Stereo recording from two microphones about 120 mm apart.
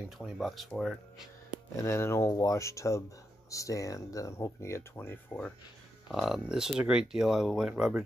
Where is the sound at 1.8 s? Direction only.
20° left (ahead or behind).